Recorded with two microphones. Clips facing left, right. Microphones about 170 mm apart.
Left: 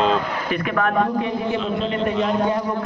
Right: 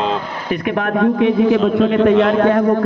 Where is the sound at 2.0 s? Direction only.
80° right.